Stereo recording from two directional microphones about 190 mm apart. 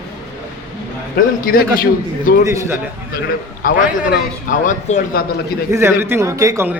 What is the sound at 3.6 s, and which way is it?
A man's voice, 45° left (ahead or behind).